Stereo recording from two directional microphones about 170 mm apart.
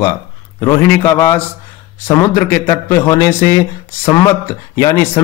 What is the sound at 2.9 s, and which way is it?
Speech, 15° left (ahead or behind).